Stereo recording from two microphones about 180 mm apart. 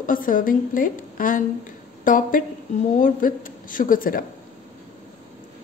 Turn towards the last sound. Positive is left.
turn(degrees=50)  # may be behind; listen again after turning